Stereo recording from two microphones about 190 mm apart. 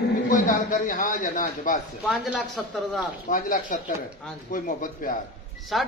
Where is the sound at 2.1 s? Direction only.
Centre (ahead or behind).